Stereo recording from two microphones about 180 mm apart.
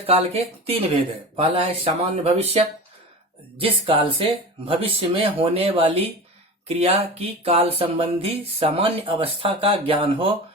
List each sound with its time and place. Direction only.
0.0 s speech: 35° right (ahead or behind)
3.6 s speech: 30° right (ahead or behind)